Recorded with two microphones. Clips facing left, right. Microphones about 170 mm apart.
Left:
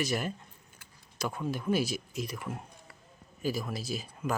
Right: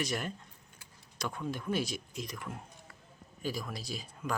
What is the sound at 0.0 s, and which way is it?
Speech, 5° left (ahead or behind).